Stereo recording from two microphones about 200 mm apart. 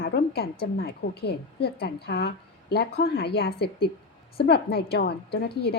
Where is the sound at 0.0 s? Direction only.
55° left (ahead or behind).